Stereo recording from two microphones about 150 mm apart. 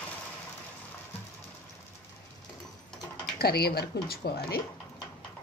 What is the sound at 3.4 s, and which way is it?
Speech, 90° left.